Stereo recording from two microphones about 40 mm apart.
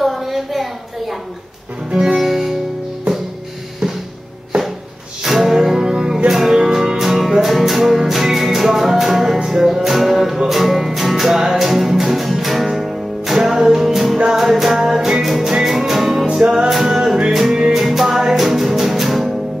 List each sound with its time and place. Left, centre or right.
0.0 s a sound: centre
1.9 s music: centre
2.2 s music: centre
3.8 s music: centre
5.2 s music: centre
6.6 s music: centre
14.4 s music: centre
16.3 s music: right
16.6 s music: centre
17.0 s music: centre
17.3 s music: centre